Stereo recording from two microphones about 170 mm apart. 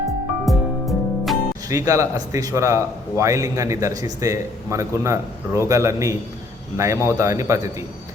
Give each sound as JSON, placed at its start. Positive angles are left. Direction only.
{"t": 0.4, "sound": "music", "side_deg": 0}
{"t": 1.6, "sound": "a man's voice", "side_deg": -20}